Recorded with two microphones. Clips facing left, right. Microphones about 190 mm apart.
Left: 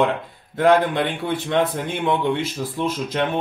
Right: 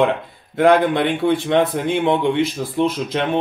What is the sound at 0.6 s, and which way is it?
Speech, 15° right (ahead or behind).